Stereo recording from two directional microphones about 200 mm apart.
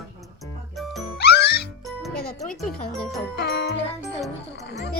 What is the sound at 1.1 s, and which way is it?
Music, 55° left (ahead or behind).